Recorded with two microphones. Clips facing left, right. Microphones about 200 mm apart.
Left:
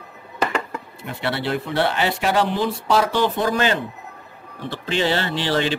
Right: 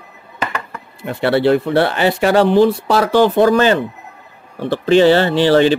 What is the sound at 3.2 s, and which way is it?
Speech, 80° right.